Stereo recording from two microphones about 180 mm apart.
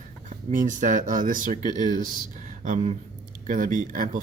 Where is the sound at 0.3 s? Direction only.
45° right (ahead or behind).